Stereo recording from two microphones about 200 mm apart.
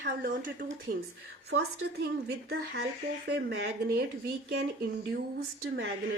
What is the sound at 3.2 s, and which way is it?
Speech, 55° right (ahead or behind).